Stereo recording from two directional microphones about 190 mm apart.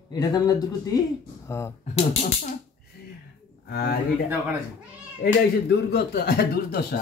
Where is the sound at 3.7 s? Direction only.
55° left (ahead or behind).